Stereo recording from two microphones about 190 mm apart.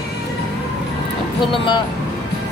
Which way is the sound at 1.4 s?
25° left (ahead or behind).